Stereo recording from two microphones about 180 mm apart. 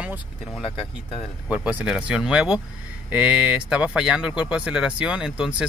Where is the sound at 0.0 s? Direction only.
5° right (ahead or behind).